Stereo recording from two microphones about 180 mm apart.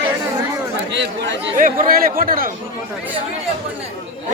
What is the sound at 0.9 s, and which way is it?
Speech, 85° right.